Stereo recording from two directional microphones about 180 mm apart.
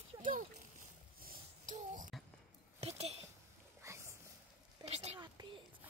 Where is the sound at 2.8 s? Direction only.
35° right (ahead or behind).